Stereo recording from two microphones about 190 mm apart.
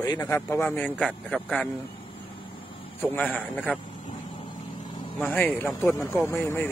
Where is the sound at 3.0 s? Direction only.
10° left (ahead or behind).